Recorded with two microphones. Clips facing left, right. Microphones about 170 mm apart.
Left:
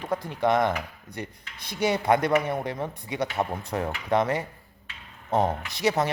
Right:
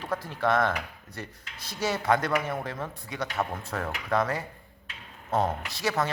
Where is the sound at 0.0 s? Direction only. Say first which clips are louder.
Left 3 dB; 15° left (ahead or behind).